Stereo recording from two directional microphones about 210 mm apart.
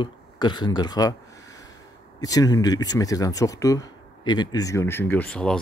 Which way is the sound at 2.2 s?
15° left (ahead or behind).